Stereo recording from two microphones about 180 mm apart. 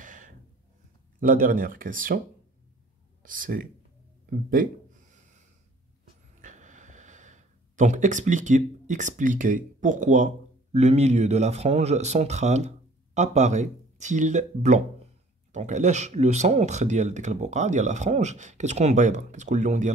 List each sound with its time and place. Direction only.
0.0 s gasp: 45° right (ahead or behind)
1.2 s speech: 50° right (ahead or behind)
4.3 s a sound: 50° right (ahead or behind)
6.4 s speech: 45° right (ahead or behind)